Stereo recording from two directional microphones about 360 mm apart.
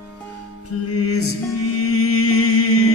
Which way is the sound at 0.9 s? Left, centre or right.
Left.